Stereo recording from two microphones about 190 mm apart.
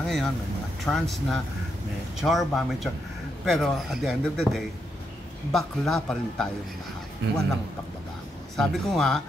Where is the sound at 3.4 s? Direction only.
Centre (ahead or behind).